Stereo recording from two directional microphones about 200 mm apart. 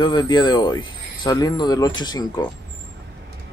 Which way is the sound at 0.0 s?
20° left (ahead or behind).